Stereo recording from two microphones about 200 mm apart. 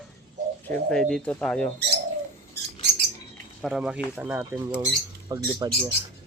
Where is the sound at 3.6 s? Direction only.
Centre (ahead or behind).